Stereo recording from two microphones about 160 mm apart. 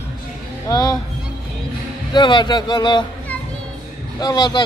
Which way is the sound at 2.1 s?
30° left (ahead or behind).